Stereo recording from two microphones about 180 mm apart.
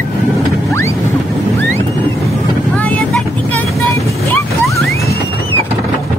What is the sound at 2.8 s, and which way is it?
Vehicle, 10° left (ahead or behind).